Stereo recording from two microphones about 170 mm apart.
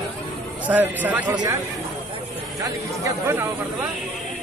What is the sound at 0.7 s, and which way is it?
Speech, 10° right (ahead or behind).